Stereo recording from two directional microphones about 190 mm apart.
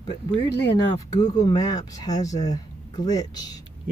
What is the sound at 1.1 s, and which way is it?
Speech, 20° left (ahead or behind).